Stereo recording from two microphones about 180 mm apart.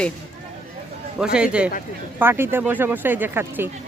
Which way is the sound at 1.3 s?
5° right (ahead or behind).